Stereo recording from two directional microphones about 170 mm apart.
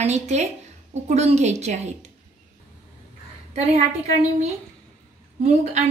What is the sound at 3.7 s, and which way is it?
A woman's voice, 40° right (ahead or behind).